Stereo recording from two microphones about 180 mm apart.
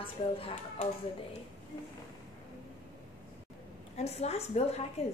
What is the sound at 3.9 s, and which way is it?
A woman's voice, 35° left (ahead or behind).